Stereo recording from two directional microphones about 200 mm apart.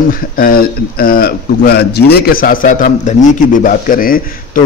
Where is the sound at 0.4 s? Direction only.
45° left (ahead or behind).